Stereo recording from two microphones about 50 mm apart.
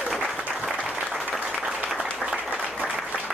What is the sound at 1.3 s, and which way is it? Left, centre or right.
Applause, centre.